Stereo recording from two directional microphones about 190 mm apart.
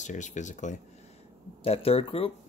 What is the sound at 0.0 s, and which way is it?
Speech, 40° left (ahead or behind).